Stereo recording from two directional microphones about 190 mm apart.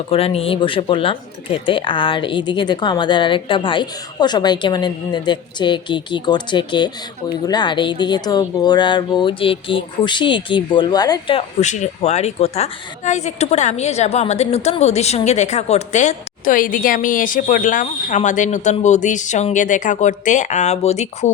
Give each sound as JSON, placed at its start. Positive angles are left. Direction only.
{"t": 0.1, "sound": "speech", "side_deg": 30}
{"t": 11.6, "sound": "speech", "side_deg": 40}